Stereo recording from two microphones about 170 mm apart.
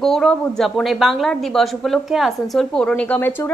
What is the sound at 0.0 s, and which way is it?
A woman's voice, centre (ahead or behind).